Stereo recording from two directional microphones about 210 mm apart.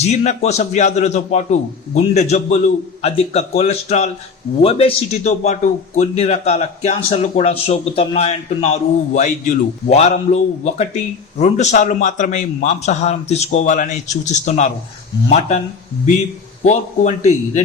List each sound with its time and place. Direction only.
0.0 s a man's voice: 35° left (ahead or behind)
16.6 s a man's voice: 35° left (ahead or behind)